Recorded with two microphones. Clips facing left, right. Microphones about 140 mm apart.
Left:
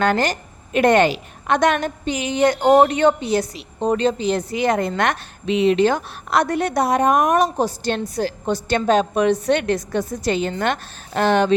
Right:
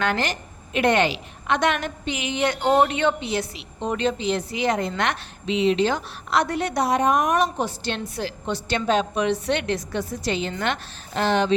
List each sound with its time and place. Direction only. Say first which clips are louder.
0.0 s a woman's voice: left 5 dB; 40° left (ahead or behind)